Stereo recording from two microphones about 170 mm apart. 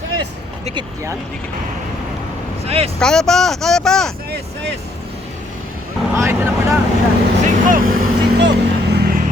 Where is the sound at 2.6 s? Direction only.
35° right (ahead or behind).